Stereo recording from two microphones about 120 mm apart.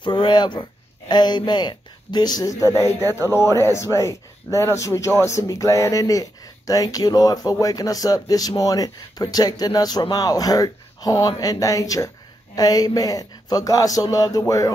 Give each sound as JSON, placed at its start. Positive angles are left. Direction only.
{"t": 0.0, "sound": "speech", "side_deg": 35}
{"t": 3.0, "sound": "speech", "side_deg": -30}
{"t": 3.3, "sound": "speech", "side_deg": 25}